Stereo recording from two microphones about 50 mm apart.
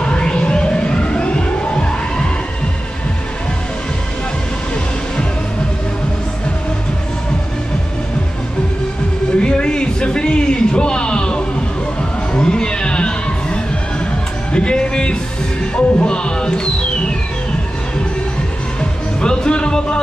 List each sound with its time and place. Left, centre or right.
0.0 s music: centre
9.4 s a sound: centre
12.4 s neigh: centre
14.5 s music: centre
18.8 s music: centre